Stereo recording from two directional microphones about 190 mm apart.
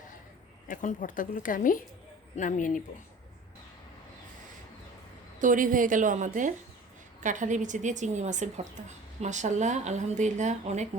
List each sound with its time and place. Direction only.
0.7 s speech: 45° left (ahead or behind)
5.4 s a woman's voice: 45° right (ahead or behind)